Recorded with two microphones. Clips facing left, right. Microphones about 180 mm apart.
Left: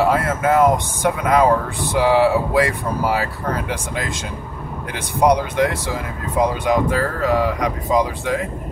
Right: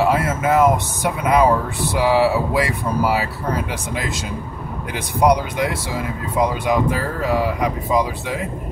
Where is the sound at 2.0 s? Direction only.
10° right (ahead or behind).